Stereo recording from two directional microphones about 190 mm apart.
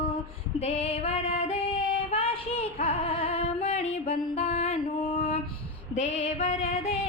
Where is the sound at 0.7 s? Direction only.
35° left (ahead or behind).